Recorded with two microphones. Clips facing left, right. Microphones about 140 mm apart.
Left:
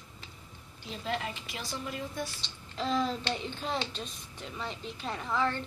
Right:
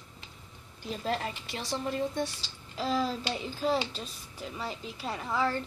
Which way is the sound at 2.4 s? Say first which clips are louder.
Right 1 dB; 5° right (ahead or behind).